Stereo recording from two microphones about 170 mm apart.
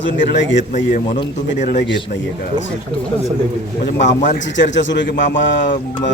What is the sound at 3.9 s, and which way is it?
Speech, 45° left (ahead or behind).